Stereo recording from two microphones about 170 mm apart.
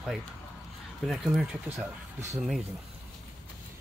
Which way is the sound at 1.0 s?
Centre (ahead or behind).